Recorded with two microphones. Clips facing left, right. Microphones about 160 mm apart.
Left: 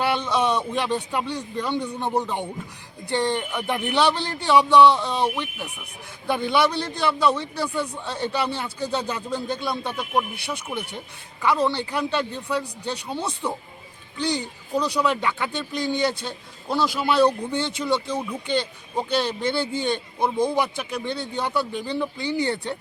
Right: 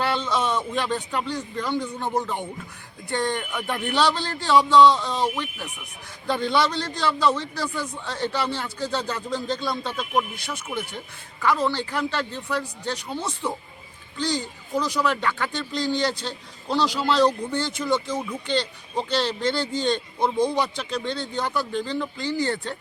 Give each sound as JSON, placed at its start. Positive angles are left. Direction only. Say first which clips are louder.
{"t": 0.0, "sound": "a man's voice", "louder": "left 2 dB", "side_deg": 15}
{"t": 11.4, "sound": "a man's voice", "louder": "left 1 dB", "side_deg": 15}
{"t": 14.2, "sound": "speech", "louder": "left 1 dB", "side_deg": 60}
{"t": 14.7, "sound": "a man's voice", "louder": "left 1 dB", "side_deg": 15}